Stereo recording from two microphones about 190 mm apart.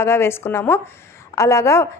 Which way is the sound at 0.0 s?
15° left (ahead or behind).